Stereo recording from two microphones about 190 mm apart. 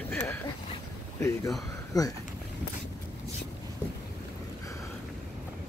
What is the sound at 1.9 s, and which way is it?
Speech, 20° left (ahead or behind).